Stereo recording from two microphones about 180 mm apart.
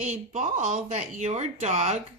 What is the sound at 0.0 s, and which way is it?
Speech, 40° right (ahead or behind).